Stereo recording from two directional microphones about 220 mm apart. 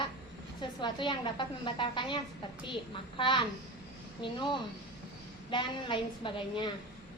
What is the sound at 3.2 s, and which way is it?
A woman's voice, 20° left (ahead or behind).